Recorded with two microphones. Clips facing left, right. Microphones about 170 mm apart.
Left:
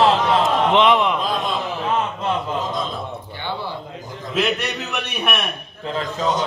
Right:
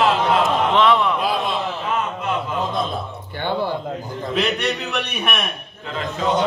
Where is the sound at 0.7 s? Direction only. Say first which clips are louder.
Left 1 dB; 20° left (ahead or behind).